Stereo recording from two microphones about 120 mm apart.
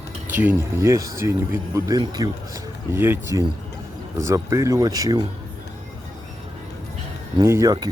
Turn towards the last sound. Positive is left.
turn(degrees=-25)  # may be behind; listen again after turning